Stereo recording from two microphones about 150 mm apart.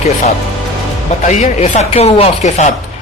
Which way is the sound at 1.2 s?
50° left (ahead or behind).